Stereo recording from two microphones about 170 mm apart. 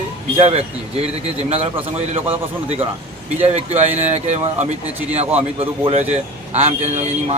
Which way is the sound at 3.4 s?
40° right (ahead or behind).